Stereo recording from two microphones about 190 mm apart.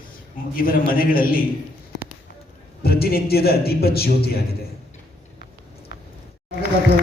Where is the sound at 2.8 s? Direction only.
55° left (ahead or behind).